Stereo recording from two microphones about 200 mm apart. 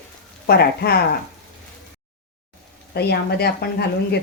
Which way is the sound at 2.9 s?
55° left (ahead or behind).